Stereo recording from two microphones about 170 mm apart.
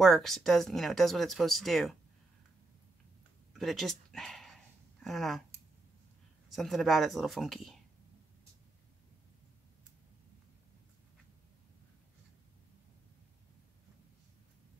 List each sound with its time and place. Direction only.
0.0 s speech: centre (ahead or behind)
3.5 s speech: centre (ahead or behind)
6.5 s speech: centre (ahead or behind)